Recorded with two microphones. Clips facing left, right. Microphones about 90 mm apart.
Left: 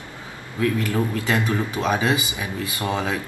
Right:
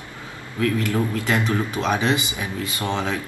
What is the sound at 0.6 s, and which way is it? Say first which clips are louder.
Speech: even; 30° left (ahead or behind).